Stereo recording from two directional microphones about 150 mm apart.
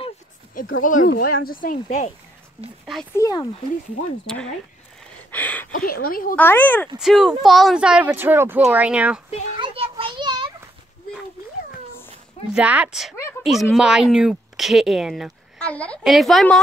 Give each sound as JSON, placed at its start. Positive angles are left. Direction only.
{"t": 0.6, "sound": "speech", "side_deg": 65}
{"t": 3.2, "sound": "speech", "side_deg": 25}
{"t": 5.3, "sound": "a sound", "side_deg": 10}
{"t": 5.7, "sound": "speech", "side_deg": 70}
{"t": 6.3, "sound": "speech", "side_deg": 10}
{"t": 7.0, "sound": "speech", "side_deg": 0}
{"t": 9.6, "sound": "children playing", "side_deg": -35}
{"t": 12.5, "sound": "speech", "side_deg": -10}
{"t": 15.6, "sound": "a child's voice", "side_deg": 10}